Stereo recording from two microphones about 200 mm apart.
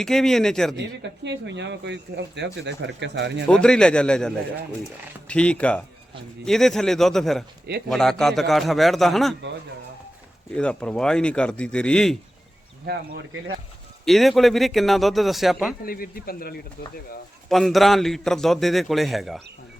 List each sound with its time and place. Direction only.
0.0 s a man's voice: centre (ahead or behind)
0.8 s speech: 60° right (ahead or behind)
3.4 s a man's voice: 5° left (ahead or behind)
10.5 s a man's voice: 5° left (ahead or behind)
12.8 s speech: 55° right (ahead or behind)
14.0 s a man's voice: centre (ahead or behind)
15.9 s a man's voice: 45° left (ahead or behind)
17.5 s a man's voice: centre (ahead or behind)